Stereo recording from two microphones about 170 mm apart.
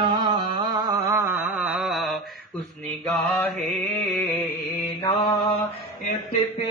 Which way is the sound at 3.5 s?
5° left (ahead or behind).